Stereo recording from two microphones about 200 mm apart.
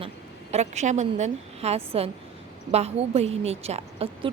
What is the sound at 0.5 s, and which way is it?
A woman's voice, 35° right (ahead or behind).